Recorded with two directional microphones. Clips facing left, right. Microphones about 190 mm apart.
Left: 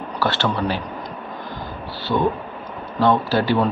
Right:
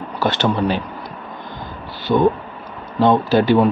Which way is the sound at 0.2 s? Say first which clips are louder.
Right 4 dB; 15° right (ahead or behind).